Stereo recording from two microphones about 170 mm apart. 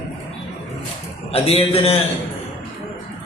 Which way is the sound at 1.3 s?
35° left (ahead or behind).